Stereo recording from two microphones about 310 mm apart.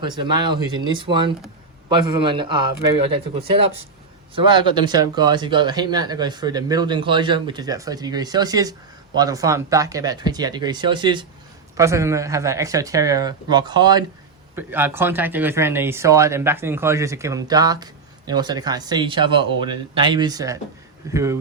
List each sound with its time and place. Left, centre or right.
0.2 s speech: centre